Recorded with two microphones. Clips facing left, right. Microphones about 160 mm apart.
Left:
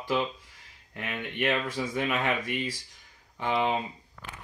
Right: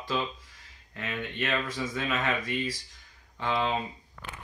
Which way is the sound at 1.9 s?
15° left (ahead or behind).